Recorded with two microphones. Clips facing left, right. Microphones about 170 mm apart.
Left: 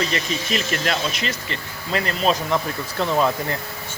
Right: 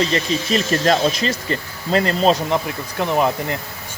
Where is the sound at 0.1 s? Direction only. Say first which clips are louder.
Right 5 dB; 35° right (ahead or behind).